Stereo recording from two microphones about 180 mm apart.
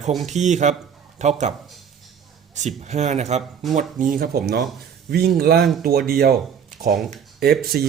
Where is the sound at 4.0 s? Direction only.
50° right (ahead or behind).